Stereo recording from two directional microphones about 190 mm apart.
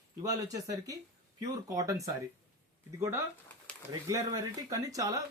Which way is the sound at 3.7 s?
5° left (ahead or behind).